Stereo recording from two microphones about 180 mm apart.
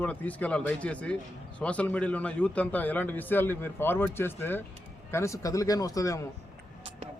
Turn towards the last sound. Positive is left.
turn(degrees=15)  # may be behind; listen again after turning